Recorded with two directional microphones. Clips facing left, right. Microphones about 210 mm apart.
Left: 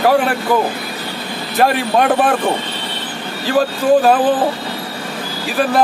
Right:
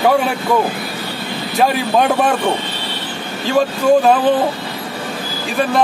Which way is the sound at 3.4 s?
Centre (ahead or behind).